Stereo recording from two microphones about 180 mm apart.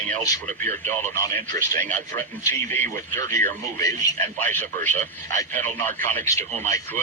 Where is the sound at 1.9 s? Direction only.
10° left (ahead or behind).